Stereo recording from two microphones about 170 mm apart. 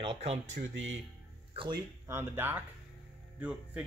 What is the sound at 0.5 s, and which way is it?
Speech, 90° right.